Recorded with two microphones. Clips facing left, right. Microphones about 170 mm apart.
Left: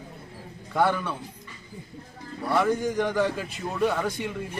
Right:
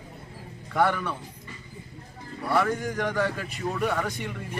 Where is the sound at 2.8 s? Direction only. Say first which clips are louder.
Left 3 dB; 20° left (ahead or behind).